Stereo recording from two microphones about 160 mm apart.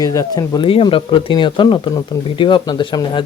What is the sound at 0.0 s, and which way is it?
Speech, 20° left (ahead or behind).